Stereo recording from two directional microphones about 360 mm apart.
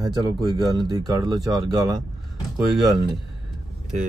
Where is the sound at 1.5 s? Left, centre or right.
Centre.